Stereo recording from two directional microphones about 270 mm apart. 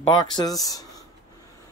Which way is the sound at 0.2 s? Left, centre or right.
Centre.